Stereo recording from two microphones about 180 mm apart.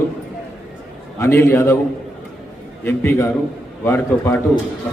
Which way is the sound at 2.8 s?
15° left (ahead or behind).